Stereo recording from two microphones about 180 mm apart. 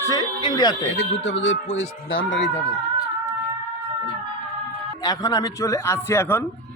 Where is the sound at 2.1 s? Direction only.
90° left.